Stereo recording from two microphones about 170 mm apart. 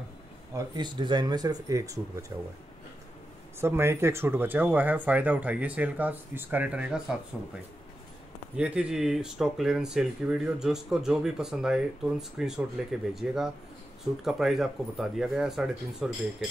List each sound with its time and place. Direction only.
0.6 s speech: 25° right (ahead or behind)
3.6 s speech: 15° right (ahead or behind)
8.5 s speech: 5° right (ahead or behind)